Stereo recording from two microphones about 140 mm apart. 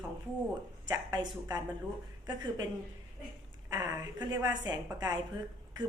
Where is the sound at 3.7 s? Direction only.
30° right (ahead or behind).